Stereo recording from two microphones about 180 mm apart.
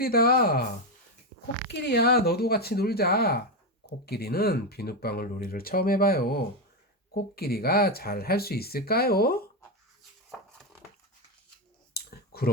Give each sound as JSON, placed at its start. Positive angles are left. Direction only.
{"t": 0.0, "sound": "speech", "side_deg": 55}
{"t": 1.7, "sound": "speech", "side_deg": 70}
{"t": 11.9, "sound": "a sound", "side_deg": 60}